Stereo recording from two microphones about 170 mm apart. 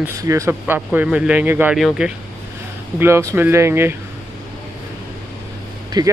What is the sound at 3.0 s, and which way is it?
Speech, 15° right (ahead or behind).